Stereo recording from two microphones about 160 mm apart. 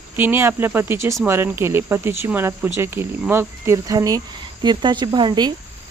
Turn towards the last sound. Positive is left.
turn(degrees=-25)  # may be behind; listen again after turning